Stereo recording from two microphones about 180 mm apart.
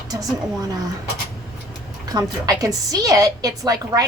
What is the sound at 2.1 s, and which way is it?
A woman's voice, 20° right (ahead or behind).